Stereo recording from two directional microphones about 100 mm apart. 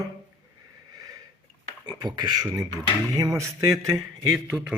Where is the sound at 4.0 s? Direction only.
5° right (ahead or behind).